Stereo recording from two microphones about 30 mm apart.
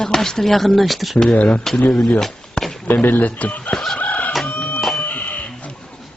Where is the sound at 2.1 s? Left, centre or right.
Centre.